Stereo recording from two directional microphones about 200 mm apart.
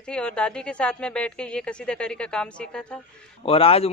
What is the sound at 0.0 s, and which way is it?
Speech, 5° left (ahead or behind).